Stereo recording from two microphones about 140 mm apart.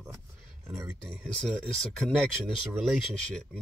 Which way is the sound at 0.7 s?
20° right (ahead or behind).